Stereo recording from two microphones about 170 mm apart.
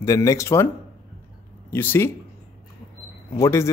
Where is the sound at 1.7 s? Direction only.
10° left (ahead or behind).